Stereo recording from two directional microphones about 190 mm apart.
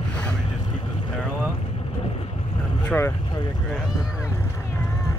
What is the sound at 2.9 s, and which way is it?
Vehicle, 10° left (ahead or behind).